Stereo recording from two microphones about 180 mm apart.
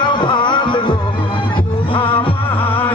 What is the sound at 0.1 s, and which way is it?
Music, 25° left (ahead or behind).